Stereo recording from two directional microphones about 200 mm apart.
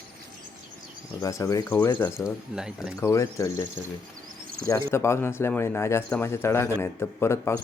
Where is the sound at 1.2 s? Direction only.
15° left (ahead or behind).